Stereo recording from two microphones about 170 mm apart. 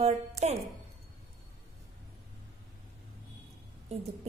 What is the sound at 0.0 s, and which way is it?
Speech, 40° right (ahead or behind).